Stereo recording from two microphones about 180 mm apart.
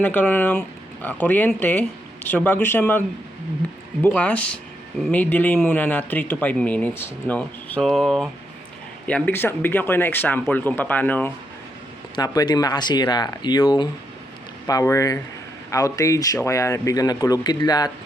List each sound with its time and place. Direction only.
0.0 s speech: 10° left (ahead or behind)
4.0 s speech: 10° left (ahead or behind)
12.1 s speech: 20° left (ahead or behind)